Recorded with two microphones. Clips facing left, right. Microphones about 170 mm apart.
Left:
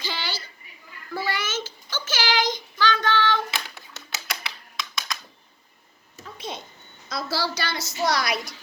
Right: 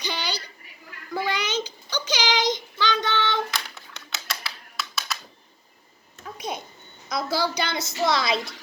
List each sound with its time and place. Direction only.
0.0 s a sound: 20° right (ahead or behind)
1.1 s child singing: 15° right (ahead or behind)
4.8 s typing: 5° right (ahead or behind)
7.1 s a woman's voice: 20° right (ahead or behind)